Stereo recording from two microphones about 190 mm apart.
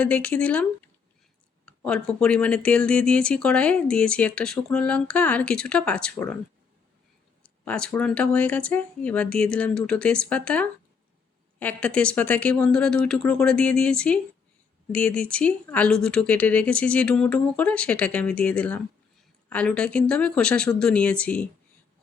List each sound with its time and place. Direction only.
0.0 s speech: 5° left (ahead or behind)
7.4 s speech: 5° left (ahead or behind)